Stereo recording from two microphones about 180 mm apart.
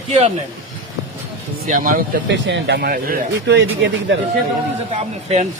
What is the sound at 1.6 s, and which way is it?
Speech, 50° right (ahead or behind).